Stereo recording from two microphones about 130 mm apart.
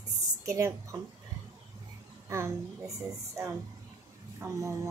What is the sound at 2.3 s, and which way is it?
Speech, 20° right (ahead or behind).